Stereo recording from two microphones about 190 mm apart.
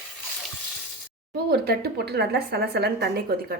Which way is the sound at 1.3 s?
55° right (ahead or behind).